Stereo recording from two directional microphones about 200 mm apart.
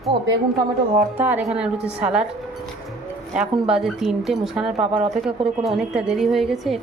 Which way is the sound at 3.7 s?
Centre (ahead or behind).